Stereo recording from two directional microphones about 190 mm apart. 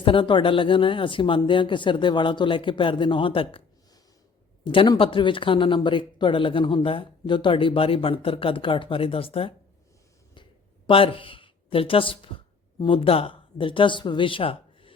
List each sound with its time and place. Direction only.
0.0 s speech: 25° left (ahead or behind)
4.6 s speech: 25° left (ahead or behind)
10.8 s a woman's voice: 30° left (ahead or behind)